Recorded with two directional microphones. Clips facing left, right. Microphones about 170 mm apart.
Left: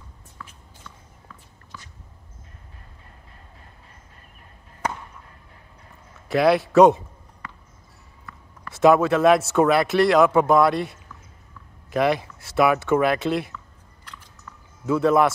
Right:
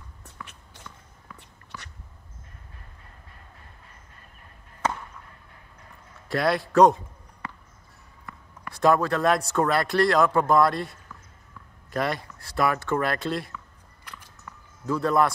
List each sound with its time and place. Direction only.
0.2 s a sound: 75° right (ahead or behind)
6.2 s speech: 5° left (ahead or behind)
7.4 s basketball bounce: 25° right (ahead or behind)
8.7 s speech: 5° left (ahead or behind)
14.9 s speech: centre (ahead or behind)